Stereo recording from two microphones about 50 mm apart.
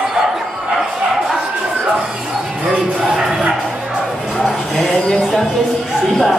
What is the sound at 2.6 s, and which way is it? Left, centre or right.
Music, right.